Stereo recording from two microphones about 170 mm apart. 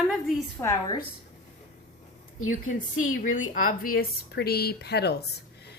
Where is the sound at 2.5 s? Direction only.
50° left (ahead or behind).